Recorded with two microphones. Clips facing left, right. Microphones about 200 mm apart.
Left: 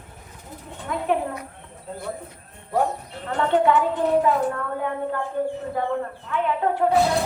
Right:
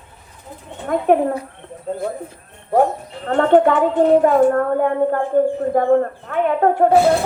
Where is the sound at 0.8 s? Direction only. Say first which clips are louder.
Right 8 dB; 50° right (ahead or behind).